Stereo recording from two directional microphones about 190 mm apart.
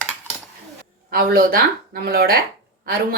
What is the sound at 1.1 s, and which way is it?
A woman's voice, 50° right (ahead or behind).